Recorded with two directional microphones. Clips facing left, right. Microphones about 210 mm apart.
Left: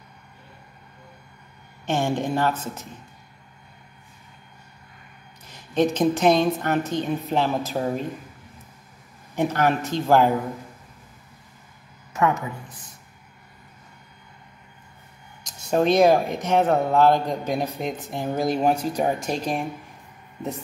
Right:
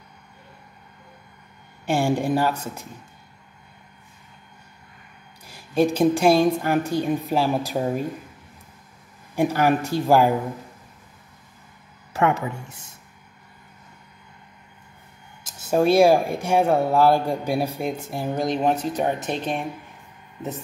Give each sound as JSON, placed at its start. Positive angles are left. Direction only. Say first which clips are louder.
{"t": 1.9, "sound": "speech", "louder": "right 2 dB", "side_deg": -10}
{"t": 5.5, "sound": "speech", "louder": "right 1 dB", "side_deg": -10}
{"t": 9.3, "sound": "speech", "louder": "right 2 dB", "side_deg": -10}
{"t": 12.1, "sound": "speech", "louder": "right 1 dB", "side_deg": -30}
{"t": 15.4, "sound": "speech", "louder": "right 1 dB", "side_deg": -5}
{"t": 18.3, "sound": "speech", "louder": "left 1 dB", "side_deg": 5}